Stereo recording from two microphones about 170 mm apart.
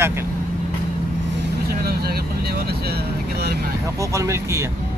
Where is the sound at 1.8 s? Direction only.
65° right (ahead or behind).